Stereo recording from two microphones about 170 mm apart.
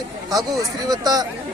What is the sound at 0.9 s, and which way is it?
Speech, 20° right (ahead or behind).